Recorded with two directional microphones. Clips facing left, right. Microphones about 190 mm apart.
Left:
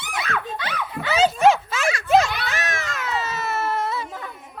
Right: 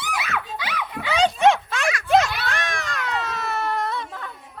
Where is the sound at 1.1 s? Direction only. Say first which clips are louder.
Left 1 dB; 5° left (ahead or behind).